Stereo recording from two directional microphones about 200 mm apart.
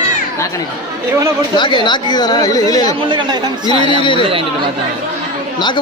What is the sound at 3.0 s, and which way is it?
Speech, 25° right (ahead or behind).